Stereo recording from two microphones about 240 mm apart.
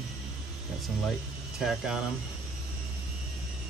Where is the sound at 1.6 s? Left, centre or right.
Centre.